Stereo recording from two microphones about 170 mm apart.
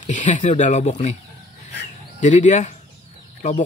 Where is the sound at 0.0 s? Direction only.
45° left (ahead or behind).